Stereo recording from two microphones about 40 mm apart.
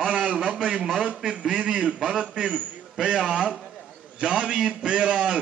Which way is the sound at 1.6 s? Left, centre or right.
Right.